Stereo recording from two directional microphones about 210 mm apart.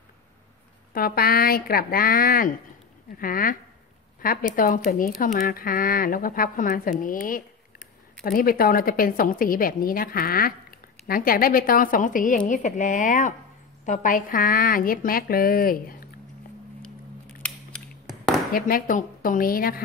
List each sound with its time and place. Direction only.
0.9 s a woman's voice: 45° left (ahead or behind)
18.5 s a woman's voice: 40° left (ahead or behind)